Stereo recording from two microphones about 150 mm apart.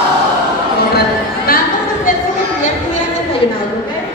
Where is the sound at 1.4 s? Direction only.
75° left (ahead or behind).